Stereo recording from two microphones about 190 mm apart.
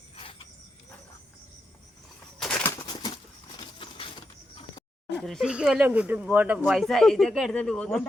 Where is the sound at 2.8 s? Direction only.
20° left (ahead or behind).